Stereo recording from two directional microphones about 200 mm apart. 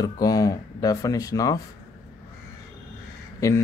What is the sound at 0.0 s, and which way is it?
Speech, 20° left (ahead or behind).